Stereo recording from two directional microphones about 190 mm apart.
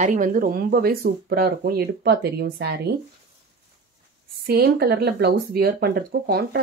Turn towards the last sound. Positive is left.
turn(degrees=-55)  # may be behind; listen again after turning